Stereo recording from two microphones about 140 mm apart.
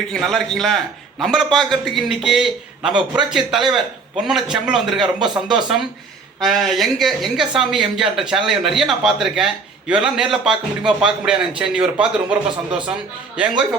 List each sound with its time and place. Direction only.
0.1 s a man's voice: centre (ahead or behind)